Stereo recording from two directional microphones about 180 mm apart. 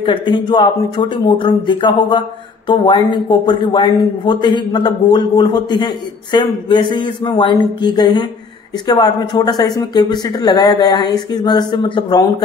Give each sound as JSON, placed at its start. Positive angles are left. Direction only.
{"t": 0.0, "sound": "speech", "side_deg": 25}